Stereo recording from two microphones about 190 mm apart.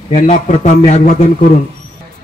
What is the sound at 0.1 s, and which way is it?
A man's voice, 40° left (ahead or behind).